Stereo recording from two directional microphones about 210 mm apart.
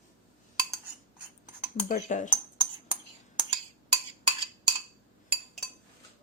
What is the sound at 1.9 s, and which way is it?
Speech, 35° left (ahead or behind).